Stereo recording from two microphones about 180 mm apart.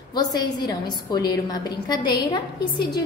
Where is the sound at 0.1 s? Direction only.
20° left (ahead or behind).